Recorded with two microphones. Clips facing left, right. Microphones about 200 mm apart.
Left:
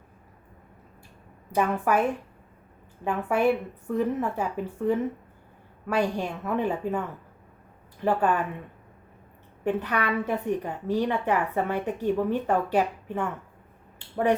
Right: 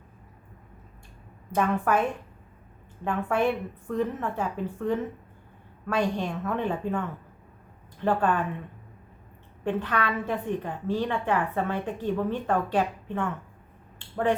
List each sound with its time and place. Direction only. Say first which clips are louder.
1.5 s a woman's voice: left 1 dB; 10° left (ahead or behind)
8.0 s a woman's voice: left 1 dB; 10° left (ahead or behind)
9.6 s a woman's voice: left 1 dB; 10° left (ahead or behind)